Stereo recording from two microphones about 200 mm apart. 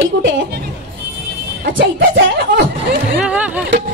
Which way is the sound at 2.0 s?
50° right (ahead or behind).